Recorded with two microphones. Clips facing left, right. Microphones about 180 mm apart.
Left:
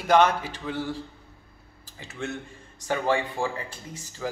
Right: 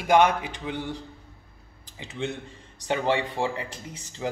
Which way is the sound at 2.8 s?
25° right (ahead or behind).